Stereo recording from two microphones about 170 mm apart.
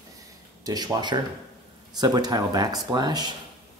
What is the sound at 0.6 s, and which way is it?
Speech, 25° right (ahead or behind).